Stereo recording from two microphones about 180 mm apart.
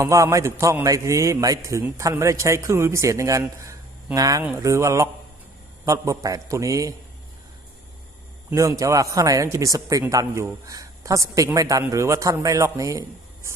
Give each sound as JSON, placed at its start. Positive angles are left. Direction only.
{"t": 0.0, "sound": "speech", "side_deg": -15}
{"t": 8.4, "sound": "speech", "side_deg": -15}